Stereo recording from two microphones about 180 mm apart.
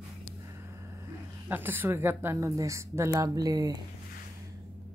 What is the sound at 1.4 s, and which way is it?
Speech, 10° right (ahead or behind).